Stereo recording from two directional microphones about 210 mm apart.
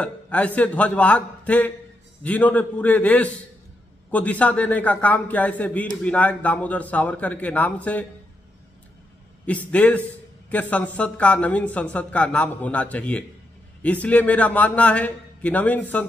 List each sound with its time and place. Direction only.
0.0 s a man's voice: 5° left (ahead or behind)
9.5 s a man's voice: 5° left (ahead or behind)